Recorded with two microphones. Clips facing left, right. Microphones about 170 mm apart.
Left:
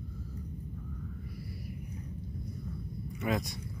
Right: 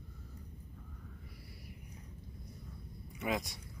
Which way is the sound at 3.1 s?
15° right (ahead or behind).